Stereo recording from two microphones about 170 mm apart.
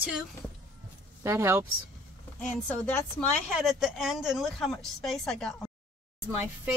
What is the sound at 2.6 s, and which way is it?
Speech, 10° left (ahead or behind).